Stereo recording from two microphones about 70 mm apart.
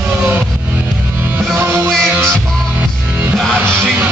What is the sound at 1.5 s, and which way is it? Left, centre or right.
Music, right.